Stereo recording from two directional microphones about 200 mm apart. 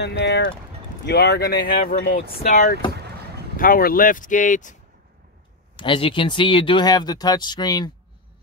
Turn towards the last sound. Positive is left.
turn(degrees=20)  # may be behind; listen again after turning